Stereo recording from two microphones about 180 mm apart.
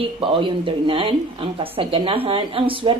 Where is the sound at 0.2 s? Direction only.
30° right (ahead or behind).